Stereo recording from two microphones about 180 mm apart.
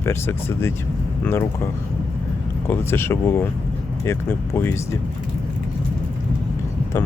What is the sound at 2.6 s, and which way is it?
Speech, 15° left (ahead or behind).